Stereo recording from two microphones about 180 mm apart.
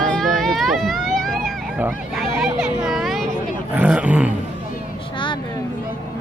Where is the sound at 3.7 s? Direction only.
5° right (ahead or behind).